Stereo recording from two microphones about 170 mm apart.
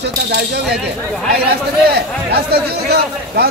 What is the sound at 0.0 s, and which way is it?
A man's voice, 75° right (ahead or behind).